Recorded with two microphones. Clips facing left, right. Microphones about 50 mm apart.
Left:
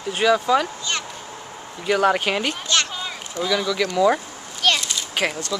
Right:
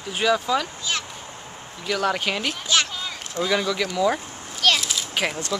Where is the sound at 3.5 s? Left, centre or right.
Centre.